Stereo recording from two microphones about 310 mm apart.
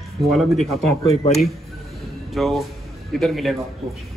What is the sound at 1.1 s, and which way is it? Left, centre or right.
Speech, left.